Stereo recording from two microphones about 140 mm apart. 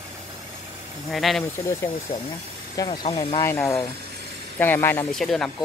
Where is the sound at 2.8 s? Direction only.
30° left (ahead or behind).